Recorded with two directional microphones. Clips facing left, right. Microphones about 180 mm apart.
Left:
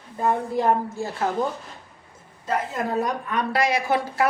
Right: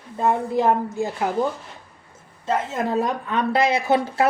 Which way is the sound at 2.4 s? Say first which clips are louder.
Right 2 dB; 25° right (ahead or behind).